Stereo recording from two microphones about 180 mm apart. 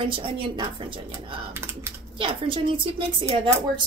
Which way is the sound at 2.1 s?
30° right (ahead or behind).